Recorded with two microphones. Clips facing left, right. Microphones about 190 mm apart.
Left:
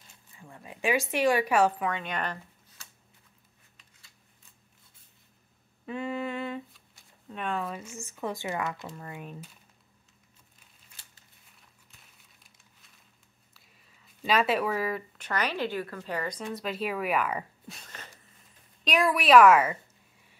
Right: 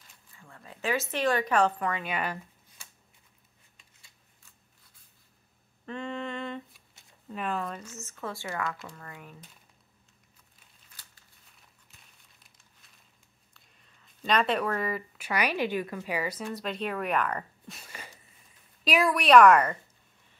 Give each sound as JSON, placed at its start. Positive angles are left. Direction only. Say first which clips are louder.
{"t": 0.4, "sound": "speech", "louder": "left 3 dB", "side_deg": 15}
{"t": 5.9, "sound": "a sound", "louder": "left 3 dB", "side_deg": 5}
{"t": 7.2, "sound": "speech", "louder": "even", "side_deg": 0}
{"t": 13.5, "sound": "speech", "louder": "left 1 dB", "side_deg": 5}
{"t": 17.8, "sound": "a sound", "louder": "right 1 dB", "side_deg": -10}
{"t": 18.9, "sound": "a woman's voice", "louder": "even", "side_deg": 0}